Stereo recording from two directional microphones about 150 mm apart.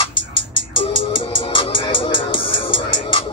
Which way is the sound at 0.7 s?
35° left (ahead or behind).